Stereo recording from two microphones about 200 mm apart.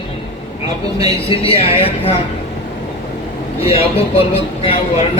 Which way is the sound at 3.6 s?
30° left (ahead or behind).